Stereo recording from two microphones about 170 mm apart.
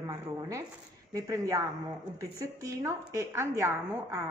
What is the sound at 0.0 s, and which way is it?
A woman's voice, 20° right (ahead or behind).